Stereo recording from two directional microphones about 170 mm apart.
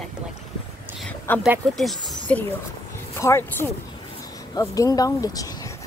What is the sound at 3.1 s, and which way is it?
Speech, 15° left (ahead or behind).